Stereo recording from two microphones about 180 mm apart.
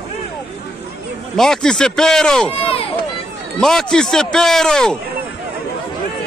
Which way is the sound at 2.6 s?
30° left (ahead or behind).